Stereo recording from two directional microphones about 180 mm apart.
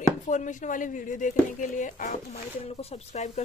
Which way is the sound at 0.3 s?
45° left (ahead or behind).